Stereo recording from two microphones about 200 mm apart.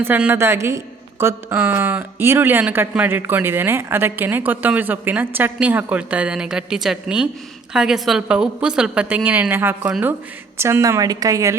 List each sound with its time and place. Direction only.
0.0 s a woman's voice: 10° right (ahead or behind)